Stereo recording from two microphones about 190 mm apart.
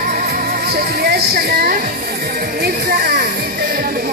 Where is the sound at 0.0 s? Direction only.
50° right (ahead or behind).